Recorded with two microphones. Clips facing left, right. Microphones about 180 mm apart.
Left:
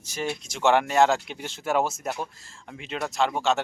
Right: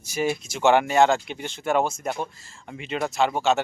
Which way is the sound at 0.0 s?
10° right (ahead or behind).